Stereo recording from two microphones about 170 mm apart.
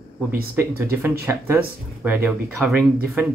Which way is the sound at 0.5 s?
15° right (ahead or behind).